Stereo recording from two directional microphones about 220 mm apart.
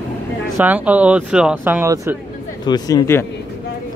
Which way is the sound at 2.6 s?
15° left (ahead or behind).